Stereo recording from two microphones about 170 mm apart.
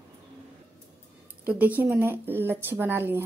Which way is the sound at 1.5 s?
10° right (ahead or behind).